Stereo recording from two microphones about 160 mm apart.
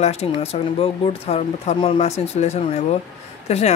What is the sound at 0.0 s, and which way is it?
Speech, 40° left (ahead or behind).